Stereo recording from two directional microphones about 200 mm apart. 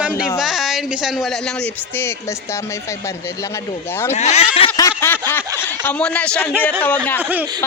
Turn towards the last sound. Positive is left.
turn(degrees=-10)  # may be behind; listen again after turning